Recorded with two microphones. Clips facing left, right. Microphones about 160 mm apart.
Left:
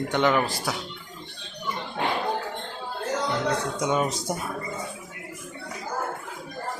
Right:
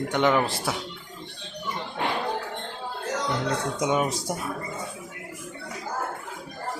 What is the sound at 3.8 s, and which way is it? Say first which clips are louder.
Speech: right 2 dB; 15° right (ahead or behind).